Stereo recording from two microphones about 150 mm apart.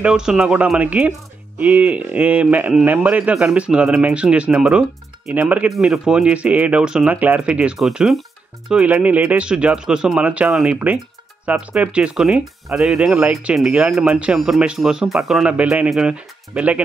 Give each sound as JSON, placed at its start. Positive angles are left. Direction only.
{"t": 0.0, "sound": "speech", "side_deg": -5}